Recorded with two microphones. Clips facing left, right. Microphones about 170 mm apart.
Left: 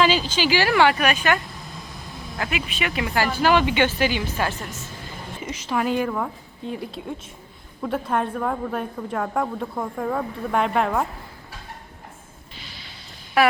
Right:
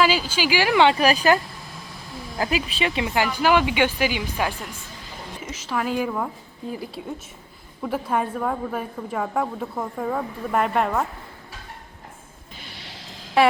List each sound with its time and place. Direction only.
0.0 s a woman's voice: 10° right (ahead or behind)
12.5 s music: 60° right (ahead or behind); by 13.1 s 85° right
13.4 s speech: 25° right (ahead or behind)